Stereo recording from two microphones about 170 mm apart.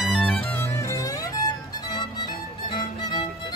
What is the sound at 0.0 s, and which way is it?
Music, centre (ahead or behind).